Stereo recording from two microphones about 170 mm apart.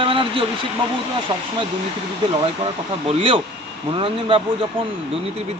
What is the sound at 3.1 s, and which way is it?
Speech, 30° right (ahead or behind).